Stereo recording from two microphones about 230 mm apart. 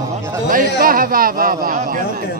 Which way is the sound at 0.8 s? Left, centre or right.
Right.